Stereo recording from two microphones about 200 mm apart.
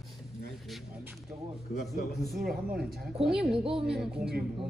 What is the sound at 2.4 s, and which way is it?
Speech, 50° right (ahead or behind).